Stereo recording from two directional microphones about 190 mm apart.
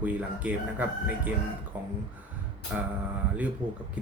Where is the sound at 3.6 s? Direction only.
25° right (ahead or behind).